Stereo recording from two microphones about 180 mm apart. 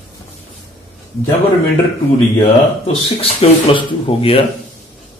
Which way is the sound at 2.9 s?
35° left (ahead or behind).